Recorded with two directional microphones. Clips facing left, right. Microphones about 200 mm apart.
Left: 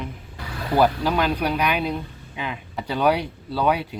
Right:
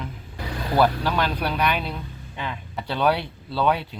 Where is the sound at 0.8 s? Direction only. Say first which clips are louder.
Left 2 dB; 10° left (ahead or behind).